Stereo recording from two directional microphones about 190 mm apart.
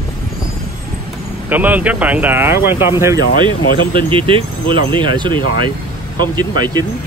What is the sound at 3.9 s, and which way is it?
Speech, 30° right (ahead or behind).